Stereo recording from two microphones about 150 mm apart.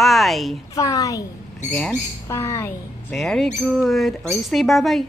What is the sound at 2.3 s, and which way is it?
Speech, 20° left (ahead or behind).